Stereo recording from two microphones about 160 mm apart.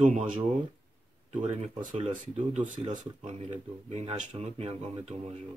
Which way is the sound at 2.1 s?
50° right (ahead or behind).